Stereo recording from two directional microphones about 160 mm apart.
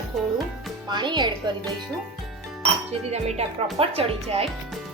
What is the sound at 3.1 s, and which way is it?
Speech, 40° right (ahead or behind).